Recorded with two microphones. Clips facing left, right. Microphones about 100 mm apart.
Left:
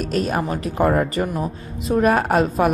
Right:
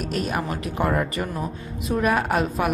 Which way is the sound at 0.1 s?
35° left (ahead or behind).